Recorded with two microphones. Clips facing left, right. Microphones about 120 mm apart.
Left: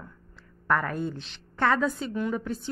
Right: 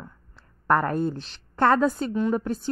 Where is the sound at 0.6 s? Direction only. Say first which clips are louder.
Right 5 dB; 40° right (ahead or behind).